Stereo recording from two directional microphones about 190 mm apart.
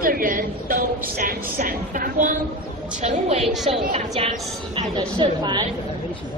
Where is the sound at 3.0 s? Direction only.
35° right (ahead or behind).